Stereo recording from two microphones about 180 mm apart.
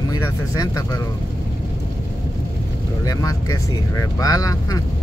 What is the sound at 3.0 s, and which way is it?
Speech, 20° left (ahead or behind).